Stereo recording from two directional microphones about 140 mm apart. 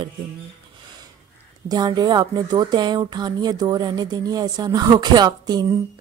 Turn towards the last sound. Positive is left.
turn(degrees=-30)  # may be behind; listen again after turning